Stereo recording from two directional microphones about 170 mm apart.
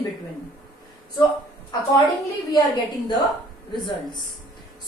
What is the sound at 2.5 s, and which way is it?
Speech, 25° left (ahead or behind).